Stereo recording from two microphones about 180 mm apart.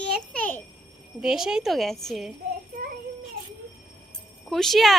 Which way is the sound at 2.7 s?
55° right (ahead or behind).